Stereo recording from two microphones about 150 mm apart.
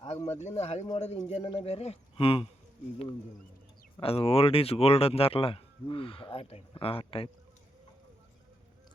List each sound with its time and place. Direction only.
0.1 s speech: 45° left (ahead or behind)
4.0 s speech: 40° left (ahead or behind)